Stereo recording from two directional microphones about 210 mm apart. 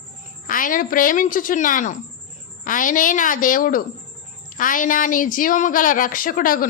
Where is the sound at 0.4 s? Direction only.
40° left (ahead or behind).